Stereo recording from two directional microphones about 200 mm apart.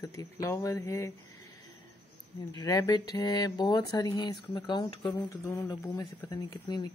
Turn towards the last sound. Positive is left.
turn(degrees=20)  # may be behind; listen again after turning